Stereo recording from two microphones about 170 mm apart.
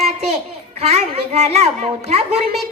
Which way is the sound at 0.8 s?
40° right (ahead or behind).